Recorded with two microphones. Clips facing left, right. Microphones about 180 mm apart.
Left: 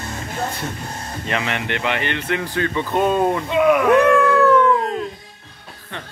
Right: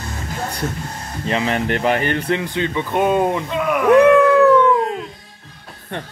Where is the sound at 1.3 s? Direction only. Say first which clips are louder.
Right 5 dB; 30° right (ahead or behind).